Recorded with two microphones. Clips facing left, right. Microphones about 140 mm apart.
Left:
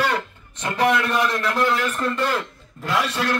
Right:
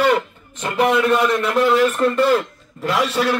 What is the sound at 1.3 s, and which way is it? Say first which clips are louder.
Speech: right 5 dB; 25° right (ahead or behind).